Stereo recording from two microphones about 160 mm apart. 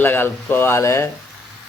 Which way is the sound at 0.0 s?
15° left (ahead or behind).